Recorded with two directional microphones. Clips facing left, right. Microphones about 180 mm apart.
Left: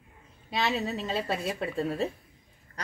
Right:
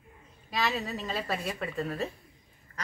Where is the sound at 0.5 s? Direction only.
25° left (ahead or behind).